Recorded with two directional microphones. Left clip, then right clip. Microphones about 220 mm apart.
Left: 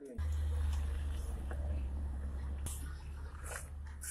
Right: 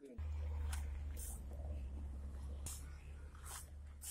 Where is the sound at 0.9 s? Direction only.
30° left (ahead or behind).